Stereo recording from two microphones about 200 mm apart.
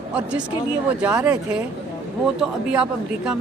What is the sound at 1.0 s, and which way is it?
A man's voice, 5° right (ahead or behind).